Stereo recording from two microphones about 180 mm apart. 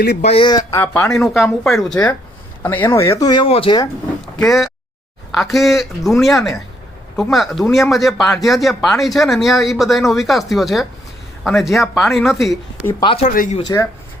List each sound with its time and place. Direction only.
0.2 s speech: 35° left (ahead or behind)
0.8 s speech: 5° left (ahead or behind)
2.6 s speech: 15° left (ahead or behind)
4.4 s speech: centre (ahead or behind)
12.5 s speech: 15° left (ahead or behind)
13.2 s speech: 45° left (ahead or behind)
13.6 s speech: 20° left (ahead or behind)